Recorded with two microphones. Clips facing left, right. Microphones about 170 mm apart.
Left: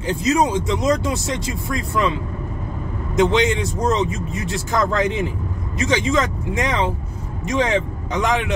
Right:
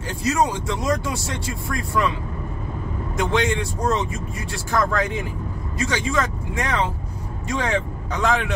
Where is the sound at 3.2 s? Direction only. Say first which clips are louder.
Left 5 dB; 20° left (ahead or behind).